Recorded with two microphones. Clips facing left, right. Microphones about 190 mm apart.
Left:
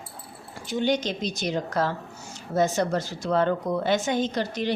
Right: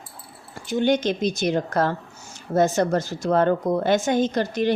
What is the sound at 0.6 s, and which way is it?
A woman's voice, 50° right (ahead or behind).